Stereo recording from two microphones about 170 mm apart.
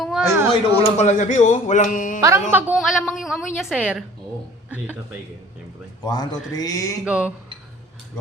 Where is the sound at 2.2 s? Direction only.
15° right (ahead or behind).